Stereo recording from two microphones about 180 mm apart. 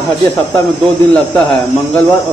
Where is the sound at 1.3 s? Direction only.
10° left (ahead or behind).